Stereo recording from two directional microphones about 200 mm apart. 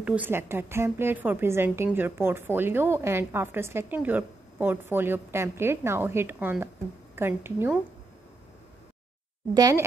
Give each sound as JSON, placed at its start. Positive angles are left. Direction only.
{"t": 0.0, "sound": "a woman's voice", "side_deg": -5}
{"t": 9.5, "sound": "a woman's voice", "side_deg": -15}